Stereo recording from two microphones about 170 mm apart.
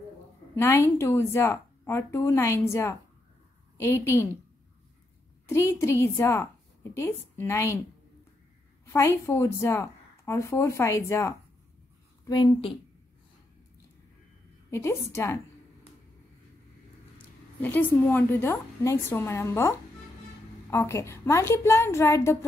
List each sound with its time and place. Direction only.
0.6 s a woman's voice: 15° left (ahead or behind)
5.5 s a woman's voice: 15° left (ahead or behind)
8.8 s a woman's voice: 15° left (ahead or behind)
14.7 s a woman's voice: 15° left (ahead or behind)
17.6 s a woman's voice: 10° left (ahead or behind)
20.7 s a woman's voice: 15° left (ahead or behind)